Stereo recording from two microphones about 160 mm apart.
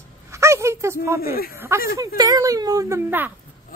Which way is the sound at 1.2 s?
70° left (ahead or behind).